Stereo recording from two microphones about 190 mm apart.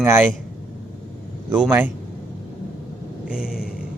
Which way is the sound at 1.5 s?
10° right (ahead or behind).